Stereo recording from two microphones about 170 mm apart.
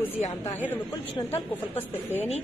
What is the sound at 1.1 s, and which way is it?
Speech, 30° left (ahead or behind).